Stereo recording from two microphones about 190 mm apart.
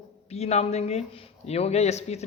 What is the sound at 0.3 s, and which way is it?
A man's voice, 35° left (ahead or behind).